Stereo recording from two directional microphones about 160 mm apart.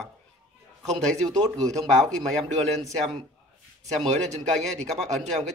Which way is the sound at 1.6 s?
20° right (ahead or behind).